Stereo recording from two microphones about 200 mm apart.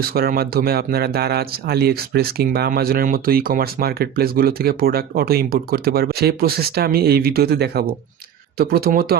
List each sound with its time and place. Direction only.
0.0 s speech: 50° right (ahead or behind)